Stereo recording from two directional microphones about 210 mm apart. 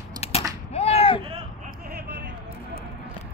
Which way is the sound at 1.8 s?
50° right (ahead or behind).